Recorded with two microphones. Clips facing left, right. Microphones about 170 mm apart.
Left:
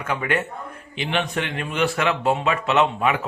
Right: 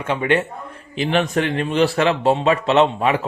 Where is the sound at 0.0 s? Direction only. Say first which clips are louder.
Right 5 dB; 25° right (ahead or behind).